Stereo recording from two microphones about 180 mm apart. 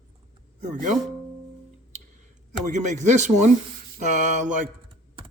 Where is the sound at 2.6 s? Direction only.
40° right (ahead or behind).